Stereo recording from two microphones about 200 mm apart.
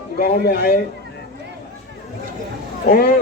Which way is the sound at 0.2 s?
50° left (ahead or behind).